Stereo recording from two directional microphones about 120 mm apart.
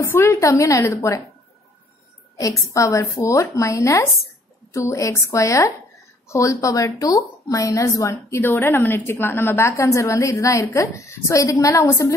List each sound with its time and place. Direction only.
0.0 s a woman's voice: 25° left (ahead or behind)
2.3 s a woman's voice: 25° left (ahead or behind)